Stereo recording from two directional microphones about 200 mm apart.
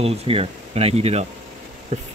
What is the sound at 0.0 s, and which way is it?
Speech, 30° right (ahead or behind).